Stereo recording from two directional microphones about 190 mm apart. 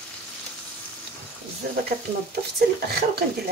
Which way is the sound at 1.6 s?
50° right (ahead or behind).